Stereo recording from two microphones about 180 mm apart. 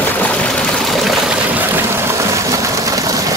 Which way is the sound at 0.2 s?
5° left (ahead or behind).